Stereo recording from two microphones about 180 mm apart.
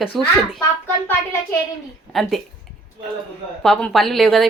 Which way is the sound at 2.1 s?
Centre (ahead or behind).